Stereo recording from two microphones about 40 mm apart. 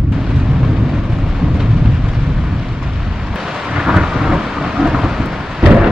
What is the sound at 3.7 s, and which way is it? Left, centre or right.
Thunder, centre.